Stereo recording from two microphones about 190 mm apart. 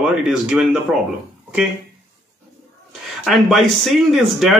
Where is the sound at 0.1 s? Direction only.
5° right (ahead or behind).